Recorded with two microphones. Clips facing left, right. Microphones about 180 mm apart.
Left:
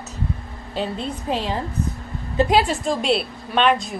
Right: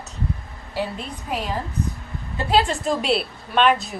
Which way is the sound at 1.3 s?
25° left (ahead or behind).